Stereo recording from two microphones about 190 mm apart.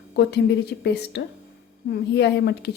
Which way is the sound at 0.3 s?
60° left (ahead or behind).